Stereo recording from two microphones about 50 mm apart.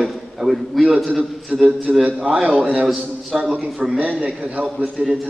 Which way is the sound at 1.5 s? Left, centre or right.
Right.